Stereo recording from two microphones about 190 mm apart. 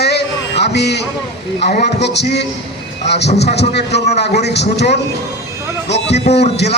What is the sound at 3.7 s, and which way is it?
A man's voice, 60° left (ahead or behind).